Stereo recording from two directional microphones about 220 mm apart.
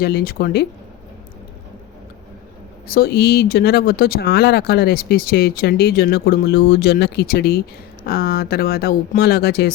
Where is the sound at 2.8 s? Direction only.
45° left (ahead or behind).